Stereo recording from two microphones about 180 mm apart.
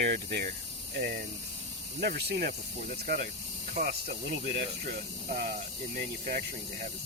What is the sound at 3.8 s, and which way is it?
Speech, 60° right (ahead or behind).